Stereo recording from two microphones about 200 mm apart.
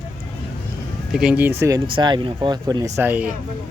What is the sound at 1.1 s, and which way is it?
Speech, 5° right (ahead or behind).